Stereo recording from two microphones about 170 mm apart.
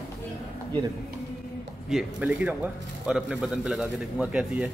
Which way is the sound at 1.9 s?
5° right (ahead or behind).